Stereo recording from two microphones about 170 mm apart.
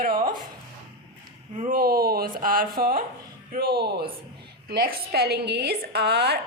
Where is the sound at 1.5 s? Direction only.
55° right (ahead or behind).